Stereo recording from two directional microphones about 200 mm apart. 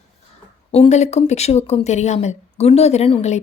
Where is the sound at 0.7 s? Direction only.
30° left (ahead or behind).